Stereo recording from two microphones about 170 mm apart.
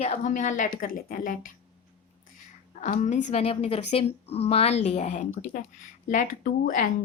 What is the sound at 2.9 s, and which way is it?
A woman's voice, 45° left (ahead or behind).